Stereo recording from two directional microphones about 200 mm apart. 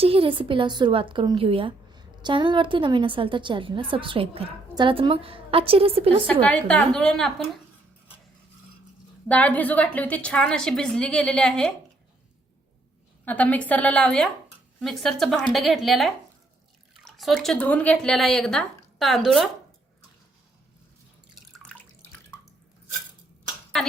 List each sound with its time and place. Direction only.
0.0 s a woman's voice: 30° right (ahead or behind)
6.4 s a woman's voice: 5° left (ahead or behind)
9.3 s a woman's voice: 5° left (ahead or behind)
13.2 s a woman's voice: 10° left (ahead or behind)